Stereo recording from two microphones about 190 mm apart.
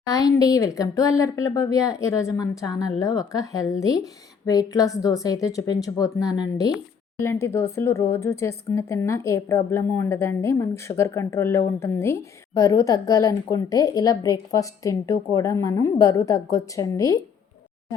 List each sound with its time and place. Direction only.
0.0 s a woman's voice: 20° left (ahead or behind)